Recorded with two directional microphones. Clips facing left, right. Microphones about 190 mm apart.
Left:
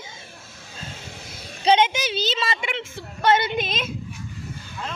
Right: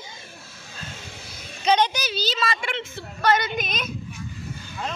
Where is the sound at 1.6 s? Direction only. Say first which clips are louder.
Left 2 dB; 25° left (ahead or behind).